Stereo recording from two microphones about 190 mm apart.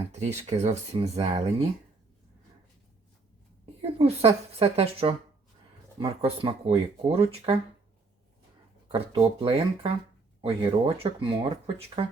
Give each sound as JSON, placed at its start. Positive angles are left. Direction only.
{"t": 0.1, "sound": "speech", "side_deg": -35}
{"t": 3.8, "sound": "speech", "side_deg": -30}
{"t": 8.9, "sound": "speech", "side_deg": -30}